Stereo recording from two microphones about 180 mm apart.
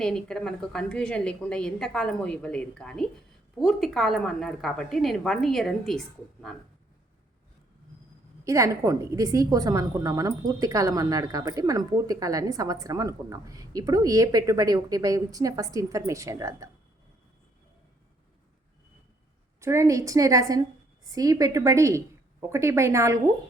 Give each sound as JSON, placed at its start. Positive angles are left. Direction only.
{"t": 0.0, "sound": "a woman's voice", "side_deg": 5}
{"t": 8.4, "sound": "a woman's voice", "side_deg": -15}
{"t": 19.5, "sound": "a woman's voice", "side_deg": -15}